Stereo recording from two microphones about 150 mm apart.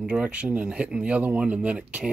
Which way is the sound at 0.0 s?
5° right (ahead or behind).